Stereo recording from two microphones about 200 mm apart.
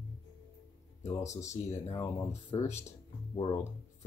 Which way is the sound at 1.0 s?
15° left (ahead or behind).